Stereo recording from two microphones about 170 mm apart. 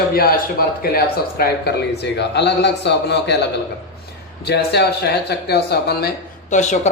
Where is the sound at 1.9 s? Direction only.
80° left.